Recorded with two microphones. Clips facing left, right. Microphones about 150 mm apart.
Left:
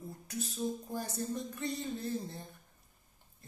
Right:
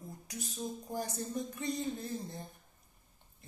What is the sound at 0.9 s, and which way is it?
Music, 15° right (ahead or behind).